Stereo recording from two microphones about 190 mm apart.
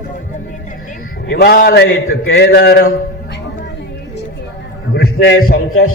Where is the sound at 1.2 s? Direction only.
55° left (ahead or behind).